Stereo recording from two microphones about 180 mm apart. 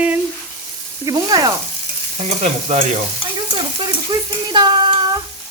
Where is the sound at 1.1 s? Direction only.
20° right (ahead or behind).